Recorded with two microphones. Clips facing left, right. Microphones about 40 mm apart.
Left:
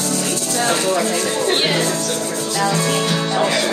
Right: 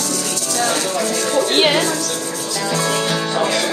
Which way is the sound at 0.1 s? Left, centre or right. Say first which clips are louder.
Left 1 dB; centre.